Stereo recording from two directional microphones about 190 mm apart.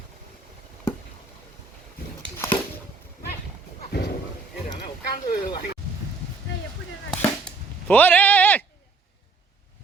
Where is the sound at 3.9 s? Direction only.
60° left (ahead or behind).